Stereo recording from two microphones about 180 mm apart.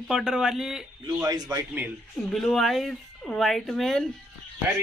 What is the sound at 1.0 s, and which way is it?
Speech, 20° right (ahead or behind).